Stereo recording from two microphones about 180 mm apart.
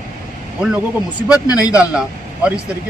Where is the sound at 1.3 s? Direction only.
20° left (ahead or behind).